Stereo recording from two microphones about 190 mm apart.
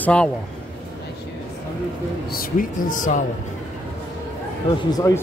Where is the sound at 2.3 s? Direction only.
45° left (ahead or behind).